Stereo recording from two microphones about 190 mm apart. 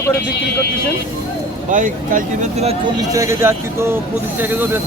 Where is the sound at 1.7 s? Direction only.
45° right (ahead or behind).